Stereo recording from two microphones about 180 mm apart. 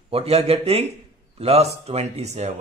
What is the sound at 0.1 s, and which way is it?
A man's voice, 35° right (ahead or behind).